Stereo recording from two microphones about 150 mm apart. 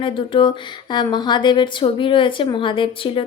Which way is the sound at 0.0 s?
35° left (ahead or behind).